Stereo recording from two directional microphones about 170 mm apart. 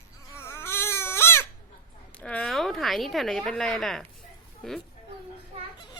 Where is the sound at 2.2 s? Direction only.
5° left (ahead or behind).